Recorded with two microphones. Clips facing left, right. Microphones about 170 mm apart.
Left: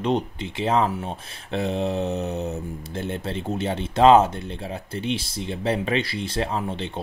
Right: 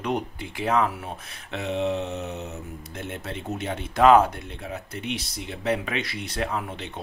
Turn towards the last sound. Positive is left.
turn(degrees=30)  # may be behind; listen again after turning